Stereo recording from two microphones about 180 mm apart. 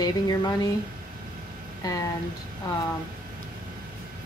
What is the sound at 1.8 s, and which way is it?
Speech, 20° left (ahead or behind).